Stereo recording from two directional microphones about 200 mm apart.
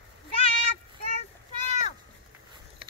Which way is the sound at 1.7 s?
35° left (ahead or behind).